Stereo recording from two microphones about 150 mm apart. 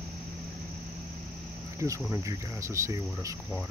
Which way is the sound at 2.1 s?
20° right (ahead or behind).